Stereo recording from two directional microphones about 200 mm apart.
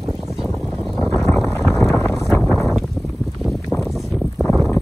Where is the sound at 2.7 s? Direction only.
Centre (ahead or behind).